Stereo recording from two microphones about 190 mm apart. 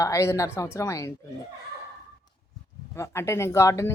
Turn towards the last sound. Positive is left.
turn(degrees=15)  # may be behind; listen again after turning